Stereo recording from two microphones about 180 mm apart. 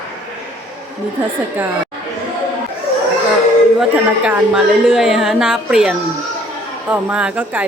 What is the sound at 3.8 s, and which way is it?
A woman's voice, 5° right (ahead or behind).